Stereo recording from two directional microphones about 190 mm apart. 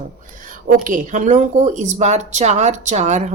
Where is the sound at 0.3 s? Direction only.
45° right (ahead or behind).